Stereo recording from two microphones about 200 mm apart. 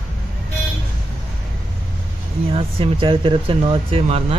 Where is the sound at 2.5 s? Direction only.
25° right (ahead or behind).